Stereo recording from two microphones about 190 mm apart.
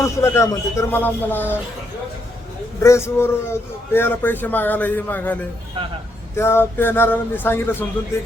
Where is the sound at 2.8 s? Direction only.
15° left (ahead or behind).